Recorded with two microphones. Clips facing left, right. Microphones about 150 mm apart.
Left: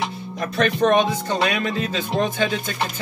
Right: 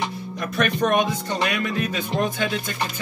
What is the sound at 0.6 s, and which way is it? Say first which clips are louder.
Speech: left 3 dB; 30° left (ahead or behind).